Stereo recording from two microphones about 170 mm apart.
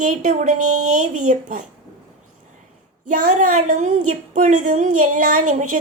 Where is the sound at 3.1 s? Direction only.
45° right (ahead or behind).